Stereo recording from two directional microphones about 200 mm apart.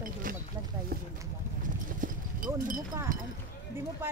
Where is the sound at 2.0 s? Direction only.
45° right (ahead or behind).